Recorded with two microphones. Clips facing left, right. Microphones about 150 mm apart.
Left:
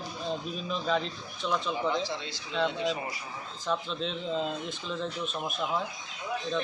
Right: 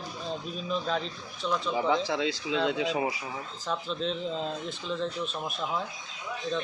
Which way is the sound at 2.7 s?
90° right.